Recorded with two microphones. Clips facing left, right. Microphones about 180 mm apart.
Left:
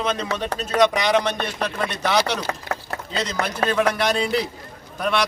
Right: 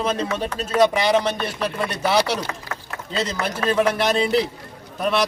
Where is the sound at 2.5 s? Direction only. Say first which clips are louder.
Left 4 dB; 40° left (ahead or behind).